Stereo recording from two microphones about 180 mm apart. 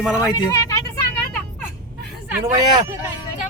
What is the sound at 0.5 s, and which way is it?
Vehicle, 15° left (ahead or behind).